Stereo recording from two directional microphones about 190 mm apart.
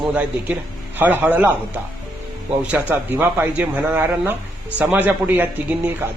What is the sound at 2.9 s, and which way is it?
Speech, 10° right (ahead or behind).